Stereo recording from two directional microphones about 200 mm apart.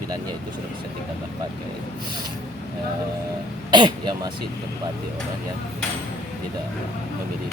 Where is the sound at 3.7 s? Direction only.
20° right (ahead or behind).